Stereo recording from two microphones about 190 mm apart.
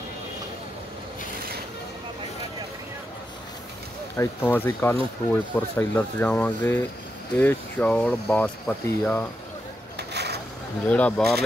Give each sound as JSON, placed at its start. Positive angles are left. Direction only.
{"t": 4.2, "sound": "speech", "side_deg": 10}
{"t": 9.9, "sound": "a sound", "side_deg": -60}
{"t": 10.9, "sound": "speech", "side_deg": 5}